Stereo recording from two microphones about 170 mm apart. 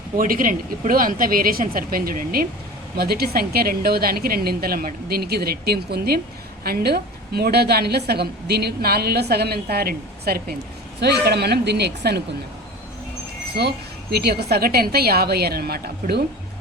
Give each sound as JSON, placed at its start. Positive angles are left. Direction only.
{"t": 0.2, "sound": "a woman's voice", "side_deg": -55}
{"t": 13.6, "sound": "a woman's voice", "side_deg": -75}